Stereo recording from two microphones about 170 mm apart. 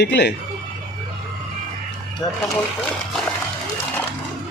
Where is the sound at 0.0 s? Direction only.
80° left.